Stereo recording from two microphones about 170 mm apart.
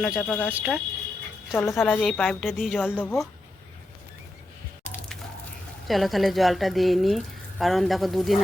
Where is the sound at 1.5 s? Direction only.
15° left (ahead or behind).